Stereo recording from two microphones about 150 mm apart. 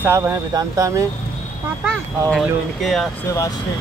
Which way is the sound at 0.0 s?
20° right (ahead or behind).